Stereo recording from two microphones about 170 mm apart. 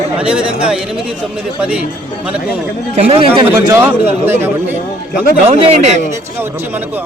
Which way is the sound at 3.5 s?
15° right (ahead or behind).